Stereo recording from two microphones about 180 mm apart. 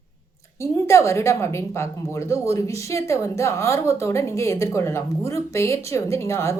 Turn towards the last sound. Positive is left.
turn(degrees=15)  # may be behind; listen again after turning